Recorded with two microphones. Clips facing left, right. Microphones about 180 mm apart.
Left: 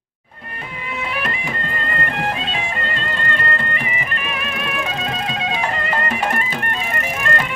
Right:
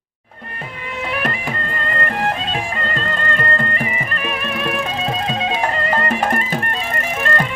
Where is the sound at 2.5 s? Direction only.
45° right (ahead or behind).